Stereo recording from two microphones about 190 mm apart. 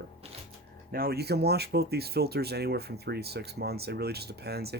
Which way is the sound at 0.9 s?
50° right (ahead or behind).